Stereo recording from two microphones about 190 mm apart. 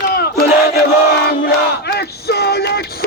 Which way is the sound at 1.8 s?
55° left (ahead or behind).